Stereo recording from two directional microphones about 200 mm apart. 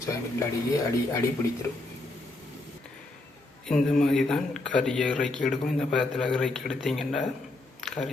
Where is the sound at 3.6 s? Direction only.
Centre (ahead or behind).